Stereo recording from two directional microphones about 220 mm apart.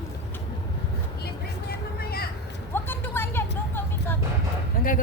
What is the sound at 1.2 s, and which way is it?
Vehicle, 45° left (ahead or behind).